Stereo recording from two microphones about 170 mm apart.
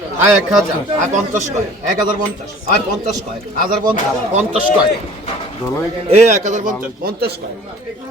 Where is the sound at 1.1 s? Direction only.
45° right (ahead or behind).